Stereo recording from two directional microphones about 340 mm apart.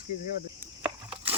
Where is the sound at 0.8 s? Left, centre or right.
Centre.